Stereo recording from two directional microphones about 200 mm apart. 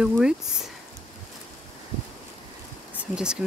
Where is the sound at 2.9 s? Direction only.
5° right (ahead or behind).